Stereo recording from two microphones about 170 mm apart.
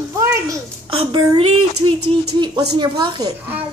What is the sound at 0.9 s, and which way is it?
A woman's voice, 35° right (ahead or behind).